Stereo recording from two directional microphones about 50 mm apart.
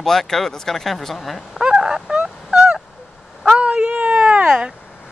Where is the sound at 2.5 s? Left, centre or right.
Centre.